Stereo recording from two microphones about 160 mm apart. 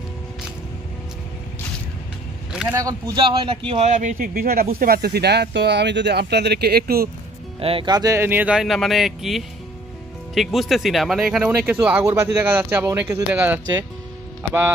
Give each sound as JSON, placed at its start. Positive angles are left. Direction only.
{"t": 2.7, "sound": "speech", "side_deg": -20}
{"t": 3.2, "sound": "speech", "side_deg": -30}
{"t": 7.6, "sound": "speech", "side_deg": -30}
{"t": 12.0, "sound": "speech", "side_deg": -20}